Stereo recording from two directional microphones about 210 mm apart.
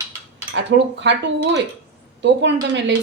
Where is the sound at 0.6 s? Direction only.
55° right (ahead or behind).